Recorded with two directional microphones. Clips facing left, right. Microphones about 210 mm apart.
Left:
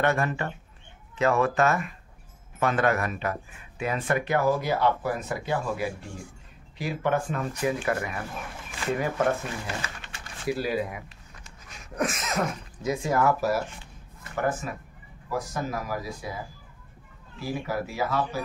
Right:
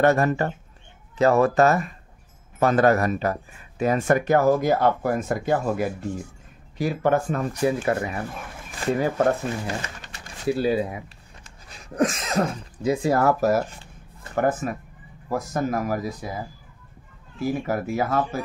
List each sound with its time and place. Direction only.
0.0 s speech: 40° right (ahead or behind)
17.4 s speech: 50° right (ahead or behind)